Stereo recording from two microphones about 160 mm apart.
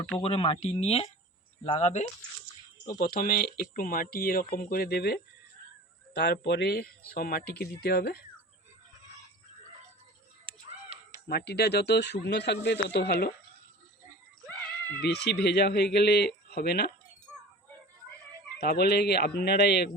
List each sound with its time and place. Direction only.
0.2 s speech: 35° left (ahead or behind)
3.0 s speech: 65° left (ahead or behind); by 6.9 s 80° left
7.1 s speech: 65° left (ahead or behind)
10.5 s music: 35° right (ahead or behind)
10.9 s a sound: 40° right (ahead or behind)
11.3 s speech: 85° left
15.0 s speech: 90° left
18.6 s speech: 85° left